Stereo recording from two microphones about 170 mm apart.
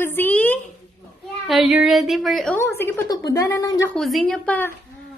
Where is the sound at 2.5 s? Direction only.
15° left (ahead or behind).